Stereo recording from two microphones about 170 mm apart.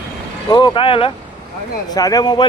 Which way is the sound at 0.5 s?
30° left (ahead or behind).